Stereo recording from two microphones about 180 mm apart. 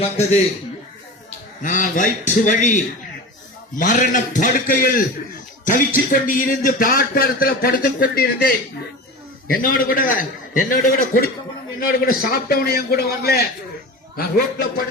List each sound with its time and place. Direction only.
0.0 s a man's voice: 35° left (ahead or behind)
1.6 s a man's voice: 45° left (ahead or behind)